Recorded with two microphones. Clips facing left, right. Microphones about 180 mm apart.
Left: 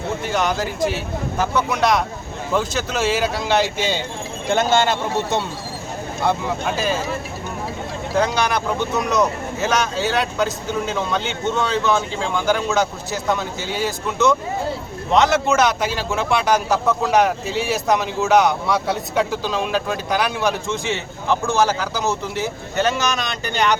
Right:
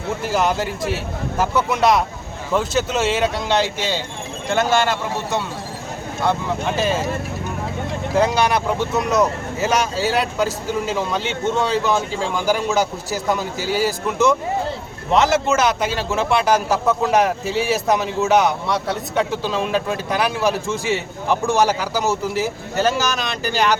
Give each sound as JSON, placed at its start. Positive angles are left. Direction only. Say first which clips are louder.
{"t": 0.2, "sound": "a man's voice", "louder": "right 3 dB", "side_deg": -5}
{"t": 6.7, "sound": "a man's voice", "louder": "right 4 dB", "side_deg": 0}
{"t": 8.1, "sound": "a man's voice", "louder": "right 2 dB", "side_deg": -5}